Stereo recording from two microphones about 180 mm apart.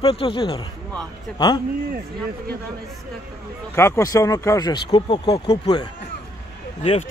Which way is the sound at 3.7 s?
15° left (ahead or behind).